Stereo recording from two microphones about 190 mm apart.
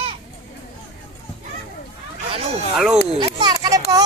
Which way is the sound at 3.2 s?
20° right (ahead or behind).